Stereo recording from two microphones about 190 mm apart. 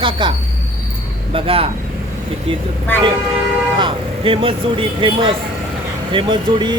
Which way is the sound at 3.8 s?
25° right (ahead or behind).